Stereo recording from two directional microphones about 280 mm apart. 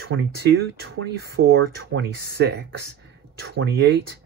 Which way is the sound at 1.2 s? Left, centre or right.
Right.